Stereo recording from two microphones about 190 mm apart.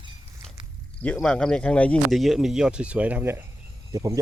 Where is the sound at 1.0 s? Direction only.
5° left (ahead or behind).